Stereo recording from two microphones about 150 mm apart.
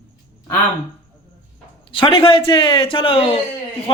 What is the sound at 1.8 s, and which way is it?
Speech, 35° left (ahead or behind).